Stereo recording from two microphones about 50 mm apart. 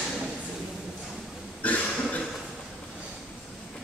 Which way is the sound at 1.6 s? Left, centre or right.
Left.